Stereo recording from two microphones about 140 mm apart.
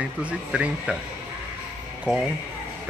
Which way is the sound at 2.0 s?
5° right (ahead or behind).